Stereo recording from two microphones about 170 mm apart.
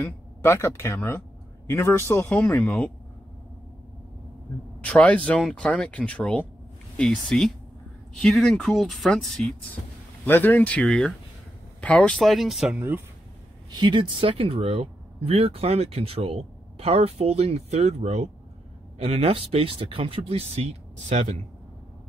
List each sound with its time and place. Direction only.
0.0 s speech: 15° left (ahead or behind)
4.8 s speech: 10° left (ahead or behind)
10.2 s speech: 10° left (ahead or behind)
13.7 s speech: 25° right (ahead or behind); by 21.4 s 45° right (ahead or behind)